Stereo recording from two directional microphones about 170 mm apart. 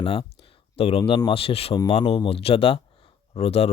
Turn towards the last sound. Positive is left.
turn(degrees=35)  # may be behind; listen again after turning